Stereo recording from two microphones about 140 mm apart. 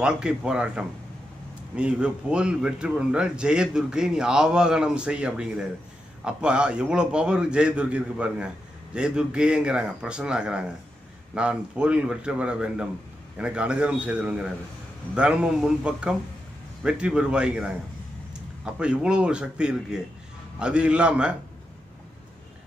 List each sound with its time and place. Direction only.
0.0 s a man's voice: 5° right (ahead or behind)